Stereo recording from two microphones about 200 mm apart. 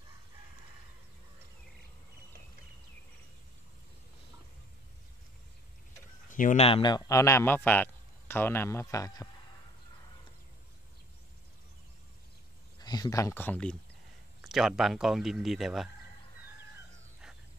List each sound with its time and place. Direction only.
6.2 s speech: 40° left (ahead or behind); by 9.3 s 15° left (ahead or behind)
12.8 s speech: 20° left (ahead or behind); by 15.9 s centre (ahead or behind)